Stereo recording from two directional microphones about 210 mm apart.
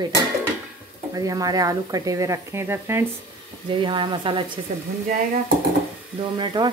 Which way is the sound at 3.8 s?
20° right (ahead or behind).